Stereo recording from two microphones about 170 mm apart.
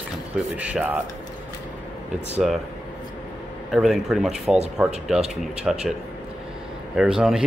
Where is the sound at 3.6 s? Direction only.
Centre (ahead or behind).